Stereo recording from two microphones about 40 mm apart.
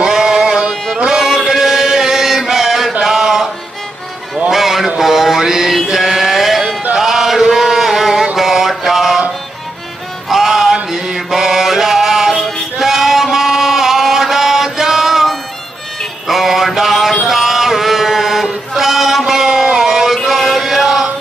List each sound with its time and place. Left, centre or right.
0.0 s music: centre
0.9 s chant: centre
3.0 s mantra: centre
4.5 s a sound: centre
5.9 s chant: centre
8.4 s mantra: centre
10.2 s mantra: centre
17.3 s chant: centre